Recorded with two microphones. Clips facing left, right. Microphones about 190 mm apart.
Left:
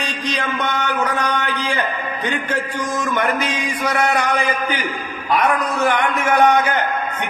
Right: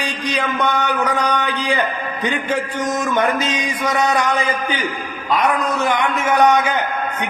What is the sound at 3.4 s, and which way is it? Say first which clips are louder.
Speech: right 1 dB; 25° right (ahead or behind).